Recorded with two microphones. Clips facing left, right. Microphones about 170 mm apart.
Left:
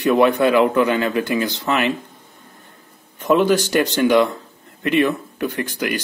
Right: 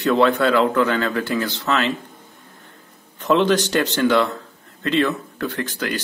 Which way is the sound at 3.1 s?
10° left (ahead or behind).